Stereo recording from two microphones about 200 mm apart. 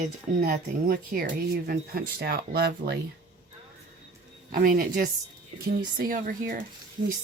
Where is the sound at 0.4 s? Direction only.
45° right (ahead or behind).